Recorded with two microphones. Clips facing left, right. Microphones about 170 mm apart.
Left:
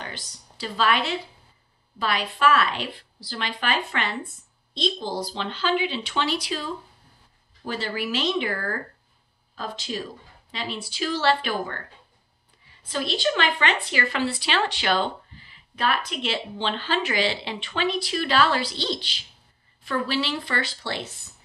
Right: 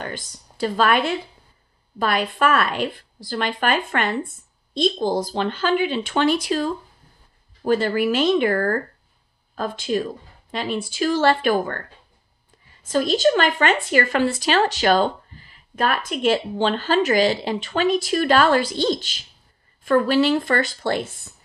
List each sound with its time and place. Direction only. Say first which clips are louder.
0.0 s a woman's voice: right 7 dB; 50° right (ahead or behind)
12.8 s speech: right 8 dB; 45° right (ahead or behind)